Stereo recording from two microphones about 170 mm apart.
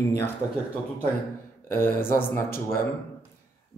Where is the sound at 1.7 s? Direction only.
15° left (ahead or behind).